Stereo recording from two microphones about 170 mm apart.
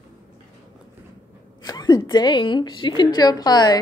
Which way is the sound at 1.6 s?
25° left (ahead or behind).